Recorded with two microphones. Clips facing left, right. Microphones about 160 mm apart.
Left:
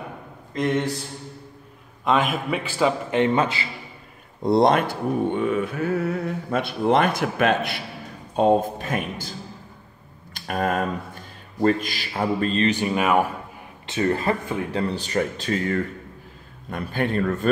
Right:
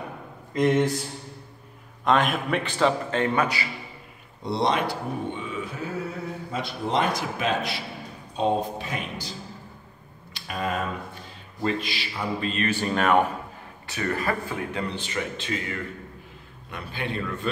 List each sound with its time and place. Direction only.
0.6 s speech: 10° right (ahead or behind)
2.0 s a man's voice: centre (ahead or behind)
3.1 s speech: 20° left (ahead or behind)
4.4 s speech: 50° left (ahead or behind)
10.3 s speech: 50° left (ahead or behind)
12.6 s speech: 10° left (ahead or behind)
13.8 s speech: 25° left (ahead or behind); by 17.5 s 45° left (ahead or behind)